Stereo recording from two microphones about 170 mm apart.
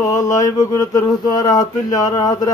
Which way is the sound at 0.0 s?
20° left (ahead or behind).